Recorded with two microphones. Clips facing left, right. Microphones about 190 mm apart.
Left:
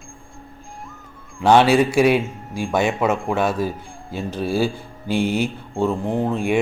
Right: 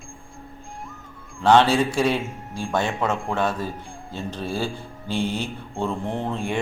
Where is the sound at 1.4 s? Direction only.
10° left (ahead or behind).